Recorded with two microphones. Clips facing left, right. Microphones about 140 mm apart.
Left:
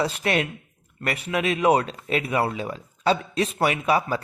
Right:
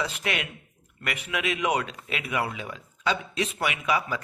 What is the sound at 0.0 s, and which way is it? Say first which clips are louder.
Speech: left 6 dB; 35° left (ahead or behind).